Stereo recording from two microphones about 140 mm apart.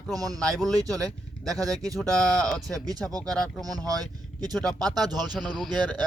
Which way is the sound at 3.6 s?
25° right (ahead or behind).